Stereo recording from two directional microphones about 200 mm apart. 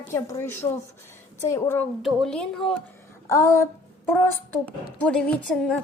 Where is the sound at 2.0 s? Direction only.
Centre (ahead or behind).